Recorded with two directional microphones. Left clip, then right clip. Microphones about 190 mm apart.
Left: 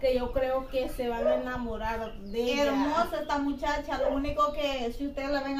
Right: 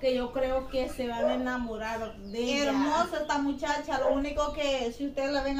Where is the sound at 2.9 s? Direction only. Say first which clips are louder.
Even; 5° right (ahead or behind).